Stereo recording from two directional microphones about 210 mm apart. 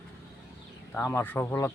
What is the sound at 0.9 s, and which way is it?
Speech, 10° left (ahead or behind).